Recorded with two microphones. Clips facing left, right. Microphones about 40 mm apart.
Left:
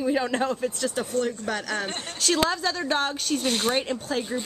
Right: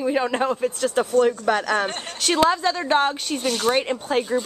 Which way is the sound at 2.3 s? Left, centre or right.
Centre.